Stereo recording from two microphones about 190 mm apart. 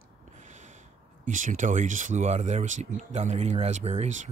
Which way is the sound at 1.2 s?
45° right (ahead or behind).